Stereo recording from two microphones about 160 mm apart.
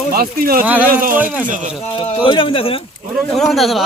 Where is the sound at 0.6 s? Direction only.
10° right (ahead or behind).